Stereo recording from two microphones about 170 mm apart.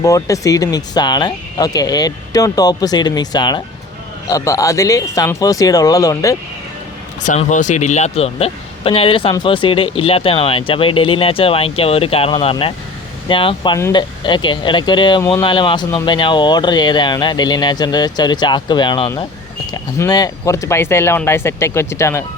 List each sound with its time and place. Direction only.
0.0 s speech: 20° left (ahead or behind)
7.2 s speech: 45° left (ahead or behind); by 22.2 s 15° left (ahead or behind)